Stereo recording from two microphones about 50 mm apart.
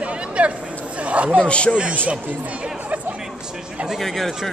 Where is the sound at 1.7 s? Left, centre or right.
Right.